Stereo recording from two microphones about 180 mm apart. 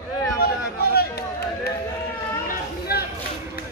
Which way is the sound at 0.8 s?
60° left (ahead or behind).